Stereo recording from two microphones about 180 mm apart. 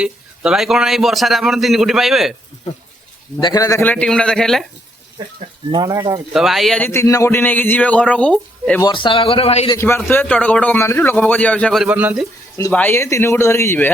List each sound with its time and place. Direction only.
0.0 s a man's voice: 5° right (ahead or behind)
3.4 s a man's voice: 20° left (ahead or behind); by 4.6 s 5° left (ahead or behind)
5.7 s speech: 20° right (ahead or behind)
6.3 s speech: centre (ahead or behind)
8.8 s a man's voice: 25° left (ahead or behind)
9.7 s speech: 15° left (ahead or behind)
11.9 s speech: 10° right (ahead or behind)
12.7 s speech: 10° left (ahead or behind)